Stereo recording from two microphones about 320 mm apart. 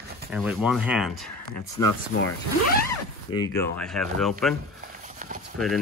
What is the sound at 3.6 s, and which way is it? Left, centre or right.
Speech, centre.